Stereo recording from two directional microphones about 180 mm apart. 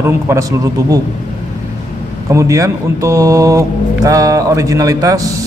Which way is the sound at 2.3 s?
20° right (ahead or behind).